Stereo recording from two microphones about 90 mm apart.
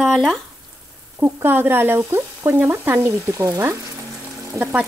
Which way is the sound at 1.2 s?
20° right (ahead or behind).